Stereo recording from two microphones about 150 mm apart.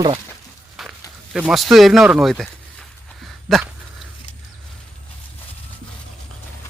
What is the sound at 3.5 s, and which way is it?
Speech, centre (ahead or behind).